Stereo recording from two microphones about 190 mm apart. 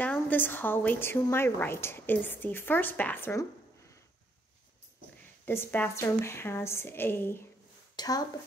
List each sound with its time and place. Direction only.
0.0 s speech: 10° left (ahead or behind)
5.4 s speech: 10° left (ahead or behind)